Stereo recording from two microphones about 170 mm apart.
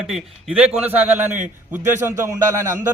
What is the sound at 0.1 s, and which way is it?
A man's voice, 5° right (ahead or behind).